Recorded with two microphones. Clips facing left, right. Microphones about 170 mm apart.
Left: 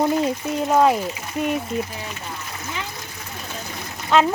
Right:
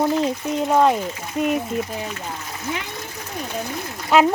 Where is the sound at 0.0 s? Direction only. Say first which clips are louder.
Even; centre (ahead or behind).